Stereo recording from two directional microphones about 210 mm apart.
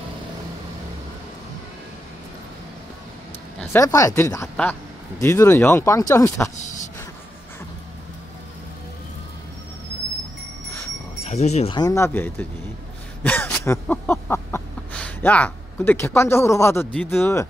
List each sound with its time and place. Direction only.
3.7 s speech: 15° left (ahead or behind)
11.2 s speech: 30° left (ahead or behind); by 12.4 s 10° left (ahead or behind)
13.2 s a sound: 10° left (ahead or behind)